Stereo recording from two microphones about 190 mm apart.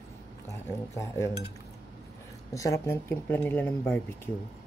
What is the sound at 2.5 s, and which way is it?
Speech, 15° left (ahead or behind).